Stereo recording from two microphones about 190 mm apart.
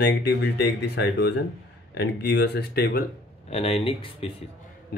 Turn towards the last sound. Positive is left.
turn(degrees=25)  # may be behind; listen again after turning